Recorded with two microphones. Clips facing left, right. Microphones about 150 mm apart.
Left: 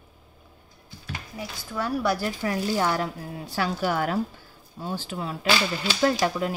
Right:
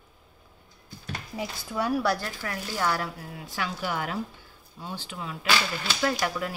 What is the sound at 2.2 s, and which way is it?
Speech, 20° left (ahead or behind).